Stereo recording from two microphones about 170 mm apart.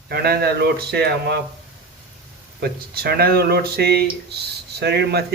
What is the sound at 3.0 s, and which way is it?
Speech, 65° right (ahead or behind).